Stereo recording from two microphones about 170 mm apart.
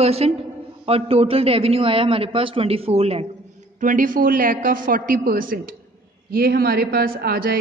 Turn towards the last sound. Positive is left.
turn(degrees=-60)  # may be behind; listen again after turning